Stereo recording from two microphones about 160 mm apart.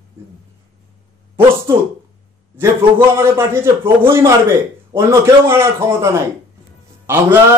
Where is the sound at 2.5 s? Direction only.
15° right (ahead or behind).